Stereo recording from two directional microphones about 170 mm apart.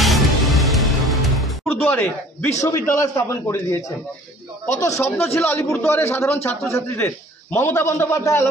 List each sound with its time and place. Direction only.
0.0 s music: centre (ahead or behind)
1.7 s a man's voice: 10° left (ahead or behind)
7.5 s a man's voice: 15° left (ahead or behind)